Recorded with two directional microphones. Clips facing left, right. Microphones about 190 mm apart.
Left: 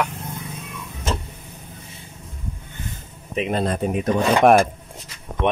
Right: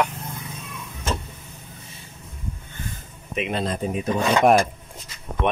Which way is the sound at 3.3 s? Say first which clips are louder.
Left 3 dB; 45° left (ahead or behind).